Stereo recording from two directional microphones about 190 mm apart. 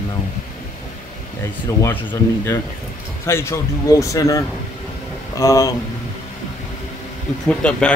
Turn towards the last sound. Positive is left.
turn(degrees=5)  # may be behind; listen again after turning